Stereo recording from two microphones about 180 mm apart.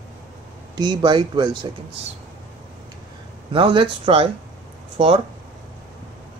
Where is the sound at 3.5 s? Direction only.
30° right (ahead or behind).